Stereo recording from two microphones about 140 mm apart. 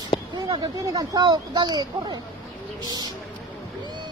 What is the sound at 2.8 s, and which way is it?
Bird, 30° right (ahead or behind).